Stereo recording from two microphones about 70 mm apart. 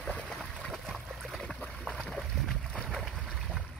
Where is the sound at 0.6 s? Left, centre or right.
Centre.